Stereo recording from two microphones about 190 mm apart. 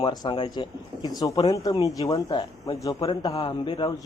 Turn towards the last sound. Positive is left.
turn(degrees=25)  # may be behind; listen again after turning